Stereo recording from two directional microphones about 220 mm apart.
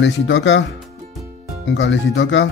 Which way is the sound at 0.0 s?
55° left (ahead or behind).